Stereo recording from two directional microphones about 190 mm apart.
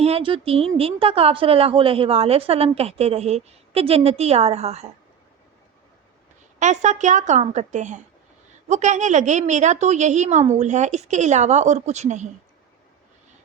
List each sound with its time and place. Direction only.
0.0 s speech: 30° right (ahead or behind)
6.6 s speech: 40° right (ahead or behind)